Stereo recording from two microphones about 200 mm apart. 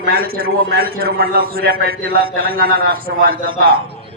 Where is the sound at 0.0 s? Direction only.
50° right (ahead or behind).